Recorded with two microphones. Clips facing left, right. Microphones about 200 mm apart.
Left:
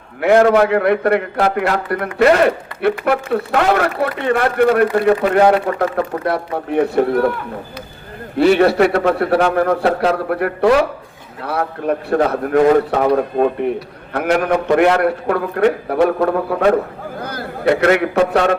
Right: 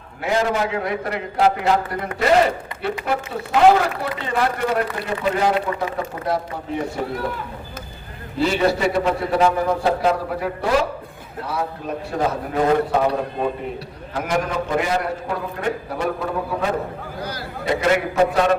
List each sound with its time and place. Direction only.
0.2 s a man's voice: 65° left (ahead or behind)
14.1 s a man's voice: 65° left (ahead or behind)
17.2 s a man's voice: 55° left (ahead or behind)